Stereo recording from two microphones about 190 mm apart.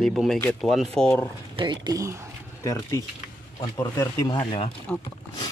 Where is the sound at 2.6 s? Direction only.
15° left (ahead or behind).